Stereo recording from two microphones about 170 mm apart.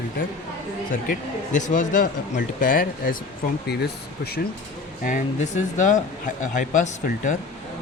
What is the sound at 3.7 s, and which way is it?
Speech, 75° left (ahead or behind).